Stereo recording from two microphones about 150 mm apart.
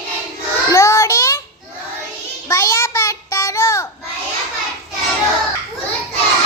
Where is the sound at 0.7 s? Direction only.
20° left (ahead or behind).